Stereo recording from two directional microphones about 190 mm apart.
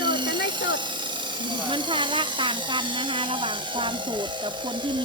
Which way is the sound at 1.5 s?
25° right (ahead or behind).